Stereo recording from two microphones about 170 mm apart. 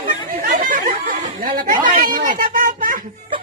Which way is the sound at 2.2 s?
55° right (ahead or behind).